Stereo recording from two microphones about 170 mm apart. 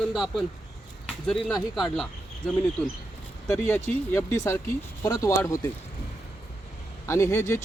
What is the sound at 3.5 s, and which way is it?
Speech, 15° left (ahead or behind).